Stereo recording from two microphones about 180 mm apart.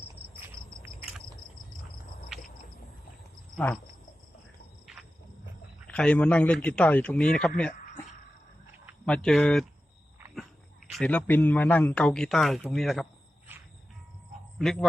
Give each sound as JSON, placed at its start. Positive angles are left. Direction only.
{"t": 5.9, "sound": "a man's voice", "side_deg": 5}
{"t": 7.7, "sound": "a sound", "side_deg": 45}
{"t": 9.0, "sound": "a man's voice", "side_deg": 5}
{"t": 10.9, "sound": "a man's voice", "side_deg": 5}
{"t": 14.6, "sound": "a man's voice", "side_deg": 0}